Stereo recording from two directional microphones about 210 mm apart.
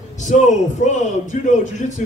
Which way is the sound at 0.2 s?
35° left (ahead or behind).